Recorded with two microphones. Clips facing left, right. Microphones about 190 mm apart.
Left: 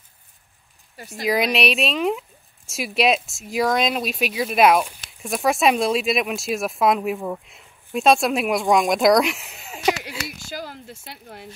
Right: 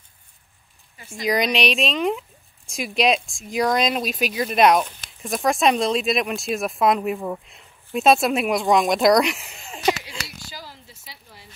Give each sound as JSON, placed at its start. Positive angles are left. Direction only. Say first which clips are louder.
{"t": 1.2, "sound": "speech", "louder": "left 1 dB", "side_deg": 5}
{"t": 10.5, "sound": "speech", "louder": "left 8 dB", "side_deg": 55}